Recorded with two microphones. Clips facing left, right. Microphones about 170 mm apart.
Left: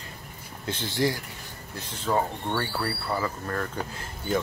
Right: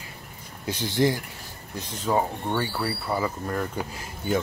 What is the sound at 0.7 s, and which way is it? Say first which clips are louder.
Speech: right 3 dB; 15° right (ahead or behind).